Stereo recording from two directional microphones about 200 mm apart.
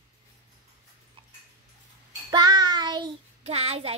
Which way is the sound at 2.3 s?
20° right (ahead or behind).